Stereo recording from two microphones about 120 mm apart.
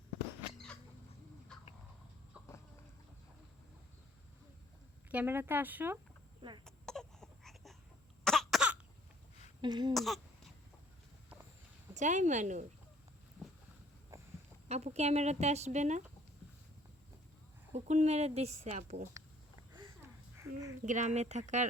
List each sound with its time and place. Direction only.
1.5 s cat: 5° left (ahead or behind)
5.1 s speech: 20° right (ahead or behind)
6.7 s baby cry: 5° left (ahead or behind)
8.2 s cough: 5° left (ahead or behind)
9.6 s speech: 35° right (ahead or behind)
9.9 s a sound: centre (ahead or behind)
11.9 s speech: 90° right
14.1 s a sound: 25° right (ahead or behind)
14.7 s speech: 70° right (ahead or behind)
17.7 s a woman's voice: 70° right (ahead or behind)
20.4 s a child's voice: 25° right (ahead or behind)
20.8 s speech: 85° right